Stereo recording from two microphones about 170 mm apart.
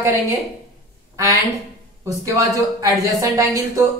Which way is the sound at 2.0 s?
20° right (ahead or behind).